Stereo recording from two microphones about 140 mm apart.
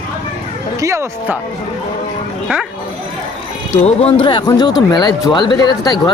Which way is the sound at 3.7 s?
45° left (ahead or behind).